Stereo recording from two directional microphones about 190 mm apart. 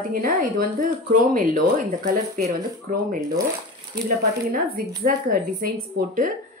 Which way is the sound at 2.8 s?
50° right (ahead or behind).